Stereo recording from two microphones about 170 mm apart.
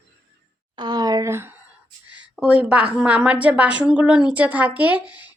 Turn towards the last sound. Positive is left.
turn(degrees=-10)  # may be behind; listen again after turning